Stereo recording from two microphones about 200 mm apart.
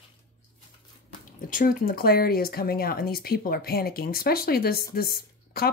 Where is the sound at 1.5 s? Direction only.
45° left (ahead or behind).